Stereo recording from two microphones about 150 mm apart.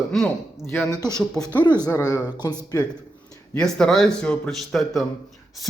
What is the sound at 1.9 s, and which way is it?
Speech, 20° left (ahead or behind).